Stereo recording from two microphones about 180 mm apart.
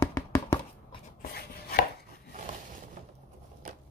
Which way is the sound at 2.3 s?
45° right (ahead or behind).